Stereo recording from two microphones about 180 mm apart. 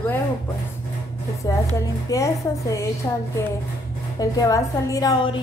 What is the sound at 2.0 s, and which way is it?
Speech, 20° left (ahead or behind).